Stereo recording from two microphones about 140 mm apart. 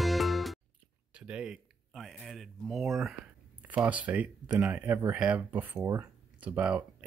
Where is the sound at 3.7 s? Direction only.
10° right (ahead or behind).